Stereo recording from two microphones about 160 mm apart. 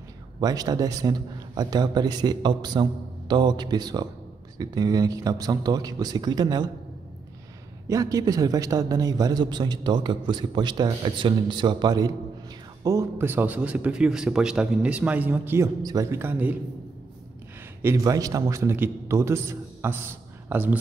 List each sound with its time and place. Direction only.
0.4 s a man's voice: 25° right (ahead or behind)
7.9 s a man's voice: 20° right (ahead or behind)
17.8 s a man's voice: 20° right (ahead or behind)